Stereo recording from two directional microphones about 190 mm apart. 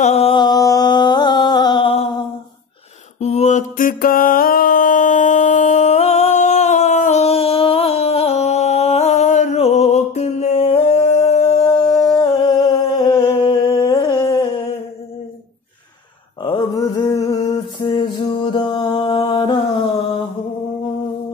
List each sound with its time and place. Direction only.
0.0 s music: 35° left (ahead or behind)
3.2 s a sound: 35° left (ahead or behind)
16.4 s mantra: 25° left (ahead or behind)